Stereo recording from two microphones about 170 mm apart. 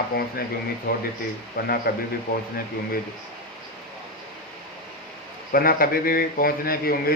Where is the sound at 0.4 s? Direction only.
65° left (ahead or behind).